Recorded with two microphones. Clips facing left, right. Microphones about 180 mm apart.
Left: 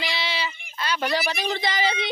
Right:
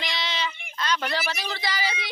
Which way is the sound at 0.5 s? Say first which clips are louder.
Right 4 dB; 60° right (ahead or behind).